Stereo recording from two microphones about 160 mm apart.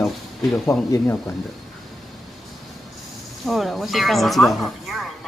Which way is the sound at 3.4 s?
Centre (ahead or behind).